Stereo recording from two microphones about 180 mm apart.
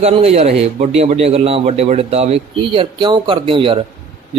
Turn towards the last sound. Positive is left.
turn(degrees=-30)  # may be behind; listen again after turning